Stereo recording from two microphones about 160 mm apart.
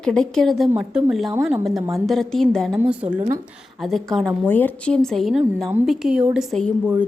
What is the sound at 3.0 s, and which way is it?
Speech, 50° right (ahead or behind).